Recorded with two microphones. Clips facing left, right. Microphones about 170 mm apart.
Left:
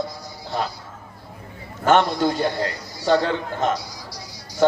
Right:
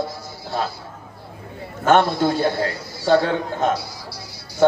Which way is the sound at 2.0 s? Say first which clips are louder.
Right 2 dB; 15° left (ahead or behind).